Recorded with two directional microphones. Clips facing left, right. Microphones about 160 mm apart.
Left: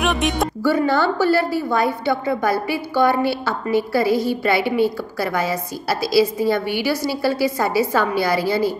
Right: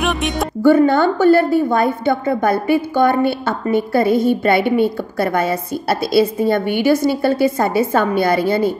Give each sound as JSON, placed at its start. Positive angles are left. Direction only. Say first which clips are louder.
{"t": 0.0, "sound": "music", "louder": "right 1 dB", "side_deg": 0}
{"t": 0.8, "sound": "a woman's voice", "louder": "right 5 dB", "side_deg": -50}